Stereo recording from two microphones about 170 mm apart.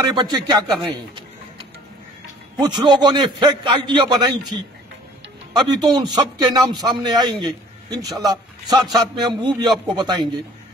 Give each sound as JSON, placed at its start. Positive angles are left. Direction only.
{"t": 0.1, "sound": "a man's voice", "side_deg": -25}
{"t": 2.6, "sound": "a man's voice", "side_deg": -25}